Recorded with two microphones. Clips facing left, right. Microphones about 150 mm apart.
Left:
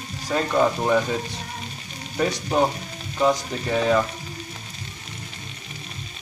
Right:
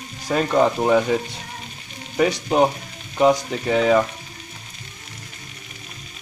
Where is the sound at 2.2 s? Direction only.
15° right (ahead or behind).